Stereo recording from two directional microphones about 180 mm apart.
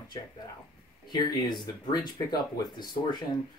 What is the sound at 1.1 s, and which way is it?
Speech, 25° left (ahead or behind).